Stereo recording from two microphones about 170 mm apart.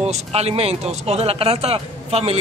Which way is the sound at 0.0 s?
40° right (ahead or behind).